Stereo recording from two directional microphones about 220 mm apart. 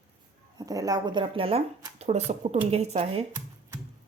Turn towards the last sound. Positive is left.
turn(degrees=-30)  # may be behind; listen again after turning